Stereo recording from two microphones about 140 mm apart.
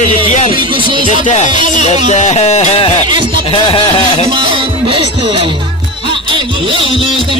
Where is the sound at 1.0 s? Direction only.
60° left (ahead or behind).